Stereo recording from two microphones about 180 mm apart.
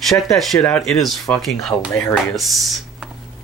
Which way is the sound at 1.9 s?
15° left (ahead or behind).